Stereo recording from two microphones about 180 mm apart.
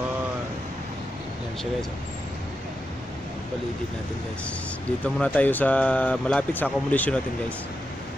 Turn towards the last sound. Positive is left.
turn(degrees=10)  # may be behind; listen again after turning